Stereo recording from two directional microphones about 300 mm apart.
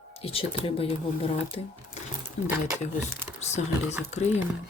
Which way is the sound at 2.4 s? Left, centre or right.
Left.